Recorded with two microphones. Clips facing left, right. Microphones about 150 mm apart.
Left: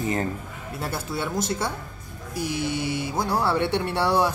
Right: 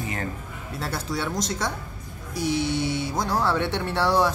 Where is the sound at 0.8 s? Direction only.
10° left (ahead or behind).